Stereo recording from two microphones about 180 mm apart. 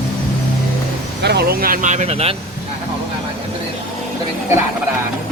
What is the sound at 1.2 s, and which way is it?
Speech, 65° right (ahead or behind).